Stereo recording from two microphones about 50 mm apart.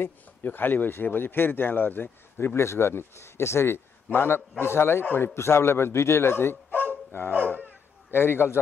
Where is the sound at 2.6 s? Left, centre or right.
Left.